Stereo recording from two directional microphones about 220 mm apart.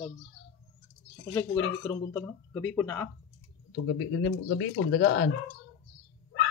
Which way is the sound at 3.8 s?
55° left (ahead or behind).